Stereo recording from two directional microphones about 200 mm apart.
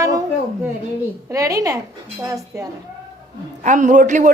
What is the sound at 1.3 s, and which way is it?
Speech, 15° right (ahead or behind).